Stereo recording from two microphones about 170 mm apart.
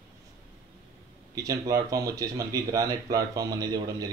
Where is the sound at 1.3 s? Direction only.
20° right (ahead or behind).